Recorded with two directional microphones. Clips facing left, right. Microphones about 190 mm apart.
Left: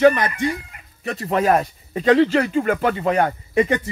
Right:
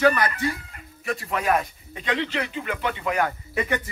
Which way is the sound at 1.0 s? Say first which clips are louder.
Left 6 dB; 35° left (ahead or behind).